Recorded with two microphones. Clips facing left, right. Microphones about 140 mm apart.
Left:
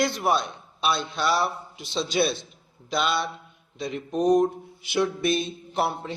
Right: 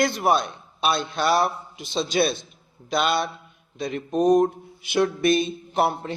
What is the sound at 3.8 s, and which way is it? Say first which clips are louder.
Mantra: right 3 dB; 50° right (ahead or behind).